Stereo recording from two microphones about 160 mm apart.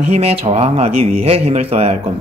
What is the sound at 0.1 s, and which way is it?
Speech, 40° right (ahead or behind).